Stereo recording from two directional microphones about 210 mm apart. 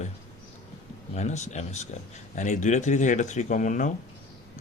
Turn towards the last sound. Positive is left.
turn(degrees=35)  # may be behind; listen again after turning